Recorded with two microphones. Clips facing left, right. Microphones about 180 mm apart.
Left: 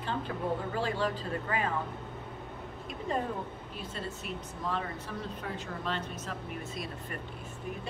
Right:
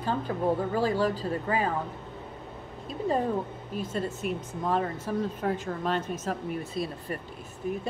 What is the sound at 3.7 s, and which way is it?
A woman's voice, 45° right (ahead or behind).